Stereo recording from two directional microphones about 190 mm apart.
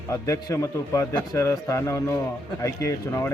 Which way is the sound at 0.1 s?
15° left (ahead or behind).